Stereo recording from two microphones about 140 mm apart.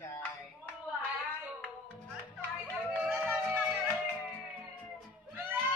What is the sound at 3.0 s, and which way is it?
Music, 10° right (ahead or behind).